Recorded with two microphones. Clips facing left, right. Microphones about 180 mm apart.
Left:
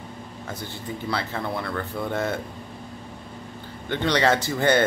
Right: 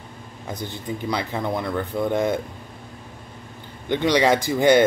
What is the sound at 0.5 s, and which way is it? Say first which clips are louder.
Speech: right 4 dB; 15° right (ahead or behind).